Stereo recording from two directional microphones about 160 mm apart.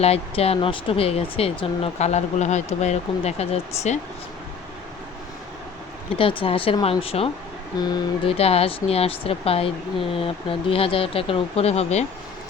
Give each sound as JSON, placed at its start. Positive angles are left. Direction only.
{"t": 0.0, "sound": "speech", "side_deg": 40}
{"t": 6.1, "sound": "speech", "side_deg": 35}